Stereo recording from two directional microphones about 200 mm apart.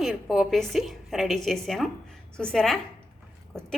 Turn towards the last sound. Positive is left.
turn(degrees=0)  # may be behind; listen again after turning